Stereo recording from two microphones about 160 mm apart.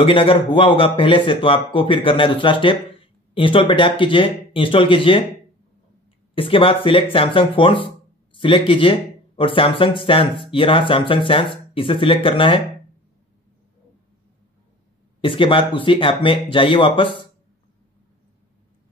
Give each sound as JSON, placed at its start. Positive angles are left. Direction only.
{"t": 0.0, "sound": "speech", "side_deg": 35}
{"t": 6.3, "sound": "speech", "side_deg": 35}
{"t": 15.1, "sound": "speech", "side_deg": 30}